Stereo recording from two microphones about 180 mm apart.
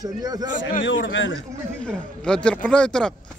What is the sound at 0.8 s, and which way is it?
Speech, 90° left.